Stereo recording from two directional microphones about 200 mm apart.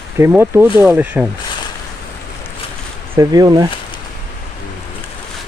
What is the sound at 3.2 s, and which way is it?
Speech, 20° right (ahead or behind).